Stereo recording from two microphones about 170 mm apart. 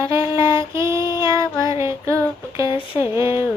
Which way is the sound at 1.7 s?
15° right (ahead or behind).